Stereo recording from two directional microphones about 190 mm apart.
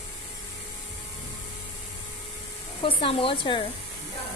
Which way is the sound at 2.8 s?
30° left (ahead or behind).